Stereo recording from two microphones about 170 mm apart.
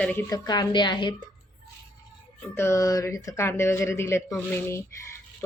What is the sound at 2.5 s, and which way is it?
A woman's voice, 15° left (ahead or behind).